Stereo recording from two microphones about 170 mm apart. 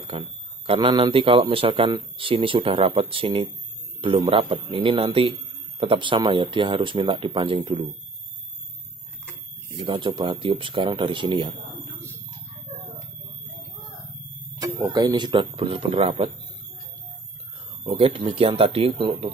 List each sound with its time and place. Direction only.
0.7 s a man's voice: 30° right (ahead or behind)
9.7 s speech: 30° right (ahead or behind)
14.5 s speech: 20° right (ahead or behind); by 16.3 s 35° right (ahead or behind)
17.8 s a man's voice: 30° right (ahead or behind)